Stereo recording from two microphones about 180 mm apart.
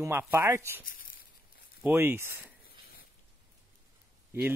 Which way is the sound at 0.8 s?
50° left (ahead or behind).